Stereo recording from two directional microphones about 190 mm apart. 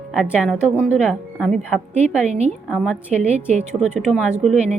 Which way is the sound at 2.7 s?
Centre (ahead or behind).